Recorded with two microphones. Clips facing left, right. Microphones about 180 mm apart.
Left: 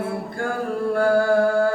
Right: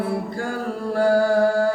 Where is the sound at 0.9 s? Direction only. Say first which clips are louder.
Right 1 dB; 55° left (ahead or behind).